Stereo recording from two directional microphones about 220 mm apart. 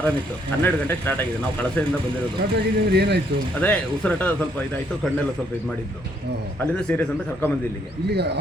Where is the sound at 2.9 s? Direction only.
50° right (ahead or behind).